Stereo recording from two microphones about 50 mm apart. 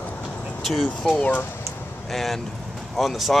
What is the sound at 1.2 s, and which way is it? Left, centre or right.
Speech, left.